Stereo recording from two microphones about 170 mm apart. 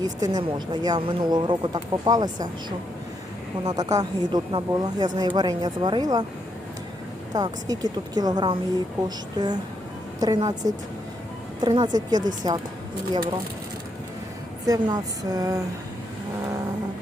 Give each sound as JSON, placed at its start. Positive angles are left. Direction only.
{"t": 0.0, "sound": "a woman's voice", "side_deg": -25}
{"t": 7.3, "sound": "a woman's voice", "side_deg": -20}
{"t": 14.7, "sound": "a woman's voice", "side_deg": -25}